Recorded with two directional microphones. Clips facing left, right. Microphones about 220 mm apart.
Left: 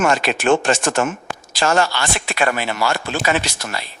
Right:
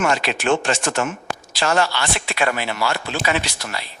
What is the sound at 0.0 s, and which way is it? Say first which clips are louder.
Speech: left 3 dB; 50° left (ahead or behind).